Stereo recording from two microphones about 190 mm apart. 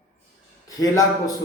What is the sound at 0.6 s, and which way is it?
Speech, 20° left (ahead or behind).